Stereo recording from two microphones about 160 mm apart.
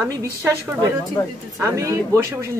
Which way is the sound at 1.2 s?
20° left (ahead or behind).